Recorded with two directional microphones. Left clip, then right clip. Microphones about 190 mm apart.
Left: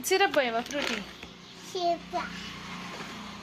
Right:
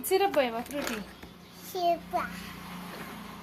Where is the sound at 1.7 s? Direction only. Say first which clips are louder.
Right 1 dB; 15° right (ahead or behind).